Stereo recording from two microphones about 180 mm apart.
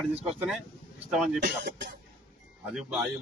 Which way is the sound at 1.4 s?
70° right (ahead or behind).